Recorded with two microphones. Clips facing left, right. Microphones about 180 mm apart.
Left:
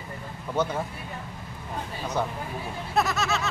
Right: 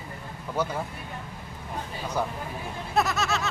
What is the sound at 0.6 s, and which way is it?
Speech, 10° right (ahead or behind).